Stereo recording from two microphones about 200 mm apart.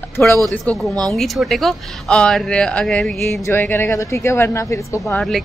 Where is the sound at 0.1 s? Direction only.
10° left (ahead or behind).